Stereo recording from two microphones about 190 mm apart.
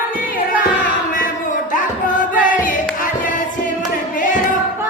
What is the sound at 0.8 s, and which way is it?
Music, 45° left (ahead or behind).